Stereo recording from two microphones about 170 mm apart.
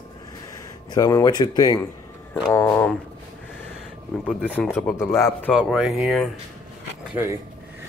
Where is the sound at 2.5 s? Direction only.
15° left (ahead or behind).